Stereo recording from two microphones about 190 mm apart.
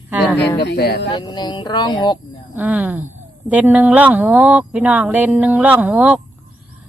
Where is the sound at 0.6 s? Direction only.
60° left (ahead or behind).